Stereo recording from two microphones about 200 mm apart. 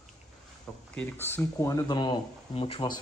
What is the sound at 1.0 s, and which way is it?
Speech, 10° left (ahead or behind).